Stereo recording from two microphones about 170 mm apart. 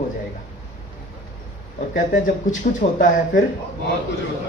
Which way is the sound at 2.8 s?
50° left (ahead or behind).